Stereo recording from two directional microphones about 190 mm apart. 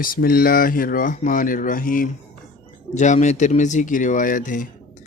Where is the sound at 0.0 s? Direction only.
50° left (ahead or behind).